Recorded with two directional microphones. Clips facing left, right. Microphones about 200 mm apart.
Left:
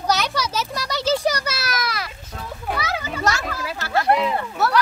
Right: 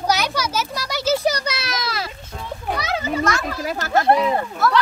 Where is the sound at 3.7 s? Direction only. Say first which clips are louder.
Right 4 dB; 45° right (ahead or behind).